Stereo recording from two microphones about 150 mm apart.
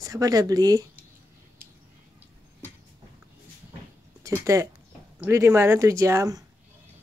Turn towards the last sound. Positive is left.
turn(degrees=-20)  # may be behind; listen again after turning